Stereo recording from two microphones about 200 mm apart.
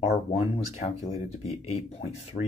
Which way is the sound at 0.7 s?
30° left (ahead or behind).